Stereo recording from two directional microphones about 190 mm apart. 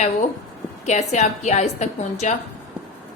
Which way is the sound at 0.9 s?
40° left (ahead or behind).